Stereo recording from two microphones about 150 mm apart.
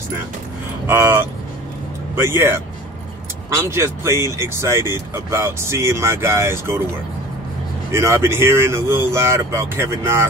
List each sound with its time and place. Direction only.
0.8 s speech: 15° right (ahead or behind)
7.9 s speech: 20° right (ahead or behind)